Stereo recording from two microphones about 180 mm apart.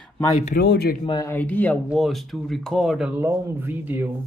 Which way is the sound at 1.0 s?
20° left (ahead or behind).